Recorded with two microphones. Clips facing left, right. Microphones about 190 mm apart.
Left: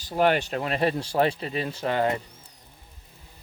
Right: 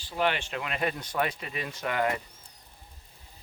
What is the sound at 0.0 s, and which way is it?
Speech, 40° left (ahead or behind).